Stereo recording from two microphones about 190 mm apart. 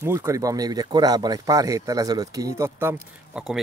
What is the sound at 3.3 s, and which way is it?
Speech, centre (ahead or behind).